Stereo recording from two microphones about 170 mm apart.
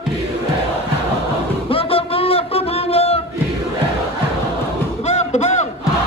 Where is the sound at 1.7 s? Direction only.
35° left (ahead or behind).